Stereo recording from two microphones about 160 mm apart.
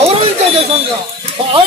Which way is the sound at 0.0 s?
40° right (ahead or behind).